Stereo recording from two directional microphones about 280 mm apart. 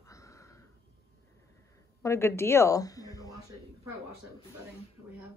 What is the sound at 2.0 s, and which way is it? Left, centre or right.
Speech, centre.